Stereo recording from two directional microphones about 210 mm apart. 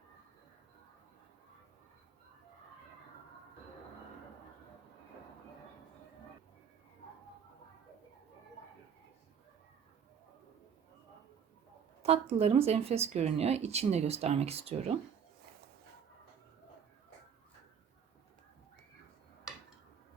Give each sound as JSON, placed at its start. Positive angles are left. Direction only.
{"t": 12.0, "sound": "speech", "side_deg": -30}